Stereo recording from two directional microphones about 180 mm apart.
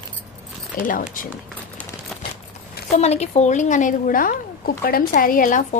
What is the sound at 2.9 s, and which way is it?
A woman's voice, 35° left (ahead or behind).